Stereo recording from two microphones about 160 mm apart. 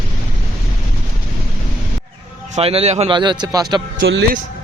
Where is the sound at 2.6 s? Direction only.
40° right (ahead or behind).